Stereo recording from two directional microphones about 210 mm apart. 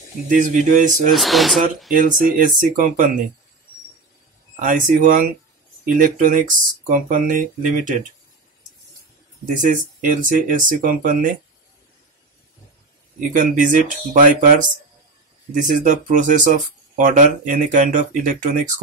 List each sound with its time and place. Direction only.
0.3 s speech: 35° right (ahead or behind)
1.1 s speech: centre (ahead or behind)
2.0 s speech: 40° right (ahead or behind)
4.6 s speech: 40° right (ahead or behind)
9.5 s speech: 35° right (ahead or behind)
13.3 s speech: 40° right (ahead or behind)